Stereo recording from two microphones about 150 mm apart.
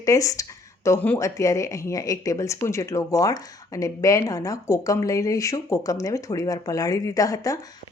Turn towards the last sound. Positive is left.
turn(degrees=20)  # may be behind; listen again after turning